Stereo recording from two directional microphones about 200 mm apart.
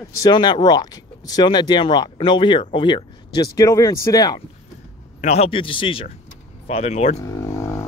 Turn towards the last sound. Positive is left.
turn(degrees=15)  # may be behind; listen again after turning